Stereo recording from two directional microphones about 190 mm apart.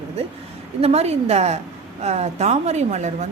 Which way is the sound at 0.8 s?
35° right (ahead or behind).